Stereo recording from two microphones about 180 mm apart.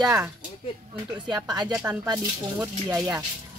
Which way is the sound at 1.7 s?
10° right (ahead or behind).